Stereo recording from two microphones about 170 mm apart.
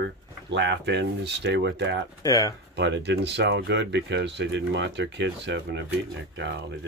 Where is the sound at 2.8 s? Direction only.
90° right.